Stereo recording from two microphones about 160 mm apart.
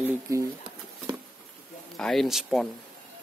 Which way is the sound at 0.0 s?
20° right (ahead or behind).